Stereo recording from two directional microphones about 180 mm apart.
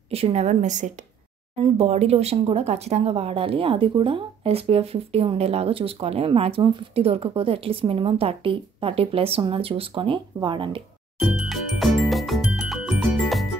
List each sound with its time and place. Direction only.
0.1 s speech: 35° right (ahead or behind)
11.1 s music: centre (ahead or behind)